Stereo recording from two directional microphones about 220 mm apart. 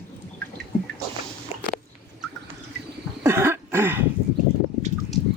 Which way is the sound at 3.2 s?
10° right (ahead or behind).